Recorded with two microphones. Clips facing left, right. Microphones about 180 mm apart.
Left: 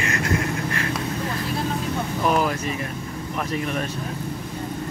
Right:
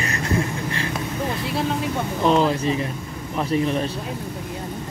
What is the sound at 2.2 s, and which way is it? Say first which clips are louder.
Speech: right 4 dB; 25° right (ahead or behind).